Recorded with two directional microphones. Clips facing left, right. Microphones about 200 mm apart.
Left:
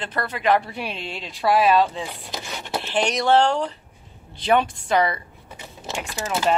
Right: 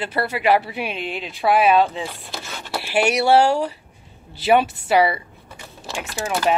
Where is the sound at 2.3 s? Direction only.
20° left (ahead or behind).